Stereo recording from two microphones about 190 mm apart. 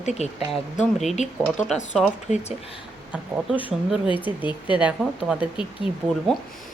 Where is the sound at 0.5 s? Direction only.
Centre (ahead or behind).